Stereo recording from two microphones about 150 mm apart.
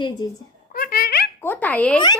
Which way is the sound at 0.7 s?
75° left (ahead or behind).